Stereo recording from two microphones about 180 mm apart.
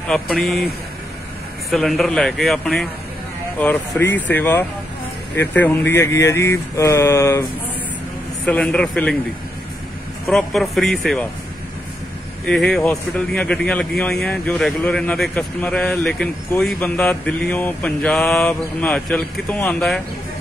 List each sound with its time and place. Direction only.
0.1 s a man's voice: centre (ahead or behind)
1.7 s a man's voice: centre (ahead or behind)
8.5 s a man's voice: 5° left (ahead or behind)
10.2 s a man's voice: centre (ahead or behind)
12.4 s a man's voice: 5° left (ahead or behind)